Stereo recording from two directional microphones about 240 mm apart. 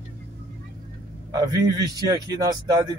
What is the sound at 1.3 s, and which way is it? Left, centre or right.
Speech, centre.